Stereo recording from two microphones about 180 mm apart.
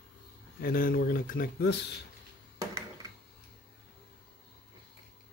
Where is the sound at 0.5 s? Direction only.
55° left (ahead or behind).